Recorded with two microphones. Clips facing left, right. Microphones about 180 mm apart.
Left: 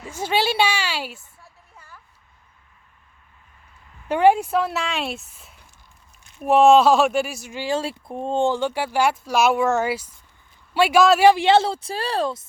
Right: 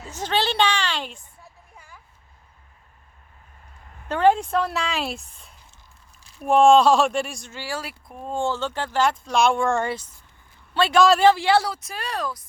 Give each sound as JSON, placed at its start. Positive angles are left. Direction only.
{"t": 0.0, "sound": "speech", "side_deg": 10}
{"t": 1.7, "sound": "a sound", "side_deg": -10}
{"t": 4.1, "sound": "speech", "side_deg": 10}
{"t": 11.3, "sound": "a woman's voice", "side_deg": 20}